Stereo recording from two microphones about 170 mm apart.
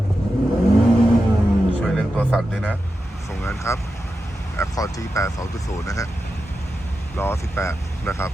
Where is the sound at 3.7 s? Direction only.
15° left (ahead or behind).